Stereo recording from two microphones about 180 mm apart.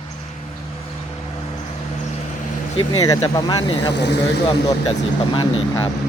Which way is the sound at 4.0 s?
70° left (ahead or behind).